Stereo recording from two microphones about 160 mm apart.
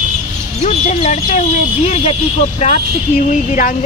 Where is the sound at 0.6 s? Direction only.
45° left (ahead or behind).